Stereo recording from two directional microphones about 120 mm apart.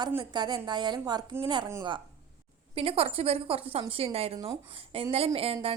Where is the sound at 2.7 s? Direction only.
55° right (ahead or behind).